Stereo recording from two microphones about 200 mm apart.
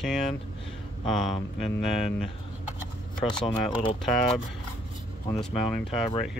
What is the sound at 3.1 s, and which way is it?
Speech, 5° left (ahead or behind).